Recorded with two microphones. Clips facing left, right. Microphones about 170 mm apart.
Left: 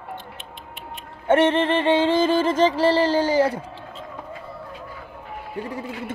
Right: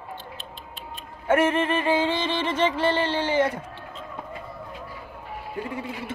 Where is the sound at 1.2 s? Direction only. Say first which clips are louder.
Left 3 dB; 30° left (ahead or behind).